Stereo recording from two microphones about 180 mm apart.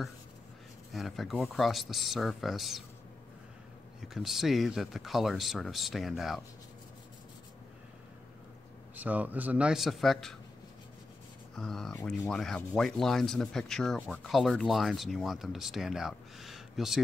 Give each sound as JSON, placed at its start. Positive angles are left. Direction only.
{"t": 0.9, "sound": "speech", "side_deg": 0}
{"t": 4.0, "sound": "speech", "side_deg": 0}
{"t": 8.9, "sound": "a man's voice", "side_deg": -10}
{"t": 11.5, "sound": "speech", "side_deg": 5}